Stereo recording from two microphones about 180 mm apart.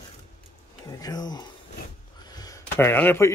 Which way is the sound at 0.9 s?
20° left (ahead or behind).